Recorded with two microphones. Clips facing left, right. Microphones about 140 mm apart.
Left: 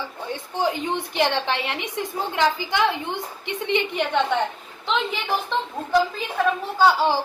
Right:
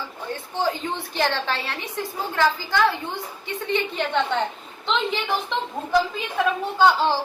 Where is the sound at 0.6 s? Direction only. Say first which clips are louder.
Left 2 dB; 20° left (ahead or behind).